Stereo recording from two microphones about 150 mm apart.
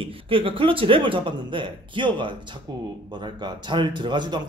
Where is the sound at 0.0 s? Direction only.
35° right (ahead or behind).